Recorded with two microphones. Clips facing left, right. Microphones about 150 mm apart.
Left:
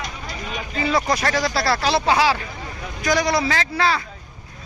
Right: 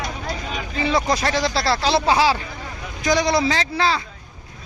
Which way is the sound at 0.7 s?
25° right (ahead or behind).